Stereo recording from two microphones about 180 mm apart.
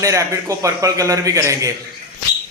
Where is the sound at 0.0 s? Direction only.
15° right (ahead or behind).